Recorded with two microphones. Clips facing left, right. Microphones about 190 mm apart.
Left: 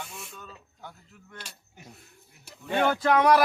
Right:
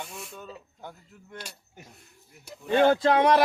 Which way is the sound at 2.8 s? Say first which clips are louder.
Right 3 dB; 25° right (ahead or behind).